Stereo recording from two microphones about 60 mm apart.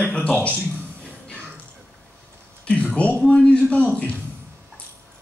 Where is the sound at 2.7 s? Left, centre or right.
Left.